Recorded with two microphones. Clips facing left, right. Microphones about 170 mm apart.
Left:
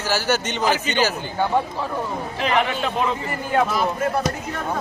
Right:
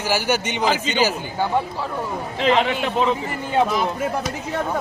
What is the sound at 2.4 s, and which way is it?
Speech, 20° right (ahead or behind).